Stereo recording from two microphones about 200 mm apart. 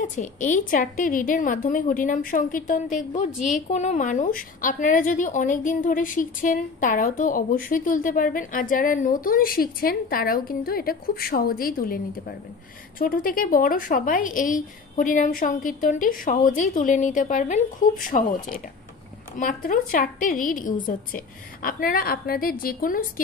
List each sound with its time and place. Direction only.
0.0 s a woman's voice: 40° left (ahead or behind)
19.3 s a woman's voice: 40° left (ahead or behind)